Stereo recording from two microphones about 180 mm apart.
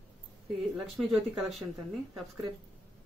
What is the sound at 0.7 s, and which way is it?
Speech, centre (ahead or behind).